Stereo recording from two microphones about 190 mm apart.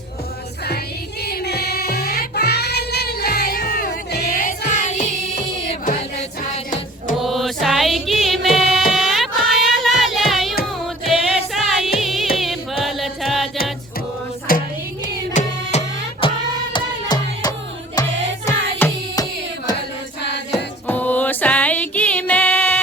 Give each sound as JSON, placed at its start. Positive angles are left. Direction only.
{"t": 1.2, "sound": "music", "side_deg": 55}
{"t": 7.2, "sound": "music", "side_deg": 0}
{"t": 12.4, "sound": "choir", "side_deg": 0}
{"t": 14.5, "sound": "a sound", "side_deg": 50}
{"t": 15.0, "sound": "music", "side_deg": 40}
{"t": 16.2, "sound": "music", "side_deg": 30}
{"t": 20.8, "sound": "music", "side_deg": 10}